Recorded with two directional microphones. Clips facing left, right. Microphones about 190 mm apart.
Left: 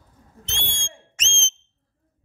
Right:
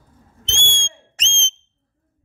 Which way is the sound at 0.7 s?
30° right (ahead or behind).